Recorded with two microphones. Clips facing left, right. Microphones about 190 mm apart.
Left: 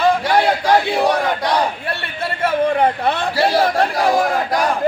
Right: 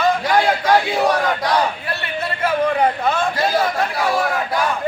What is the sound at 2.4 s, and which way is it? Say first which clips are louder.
A man's voice: left 2 dB; 30° left (ahead or behind).